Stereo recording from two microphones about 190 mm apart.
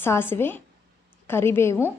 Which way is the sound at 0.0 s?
10° left (ahead or behind).